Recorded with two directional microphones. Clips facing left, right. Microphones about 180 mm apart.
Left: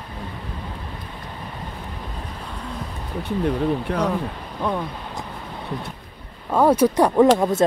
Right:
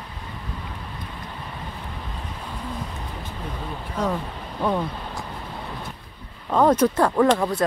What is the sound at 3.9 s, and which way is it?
Speech, 70° left (ahead or behind).